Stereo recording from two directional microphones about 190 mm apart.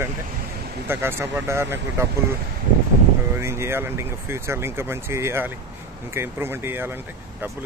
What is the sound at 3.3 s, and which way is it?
Speech, 15° right (ahead or behind).